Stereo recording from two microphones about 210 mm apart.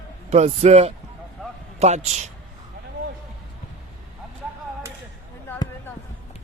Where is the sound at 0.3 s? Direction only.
30° right (ahead or behind).